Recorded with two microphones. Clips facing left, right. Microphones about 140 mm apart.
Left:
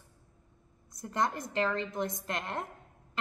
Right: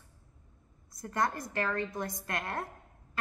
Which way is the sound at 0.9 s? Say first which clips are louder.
Even; 20° left (ahead or behind).